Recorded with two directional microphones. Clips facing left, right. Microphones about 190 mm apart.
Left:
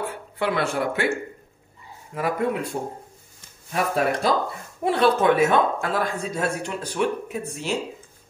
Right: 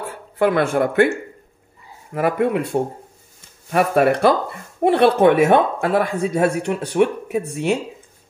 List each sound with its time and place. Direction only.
0.1 s speech: 45° right (ahead or behind)
2.1 s speech: 65° right (ahead or behind)